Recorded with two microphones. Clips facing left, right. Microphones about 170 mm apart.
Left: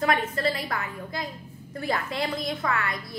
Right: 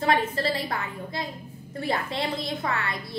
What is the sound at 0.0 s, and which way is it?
A woman's voice, 30° right (ahead or behind).